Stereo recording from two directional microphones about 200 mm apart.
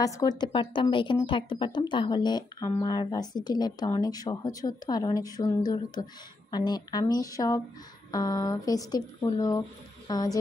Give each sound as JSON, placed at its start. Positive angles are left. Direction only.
{"t": 0.0, "sound": "a woman's voice", "side_deg": 20}